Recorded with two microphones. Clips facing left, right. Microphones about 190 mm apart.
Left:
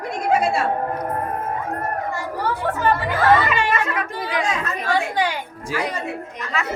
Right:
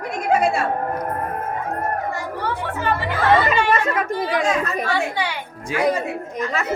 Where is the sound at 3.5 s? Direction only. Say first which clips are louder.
Right 3 dB; 45° right (ahead or behind).